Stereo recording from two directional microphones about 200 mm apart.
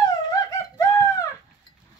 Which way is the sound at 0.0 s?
15° left (ahead or behind).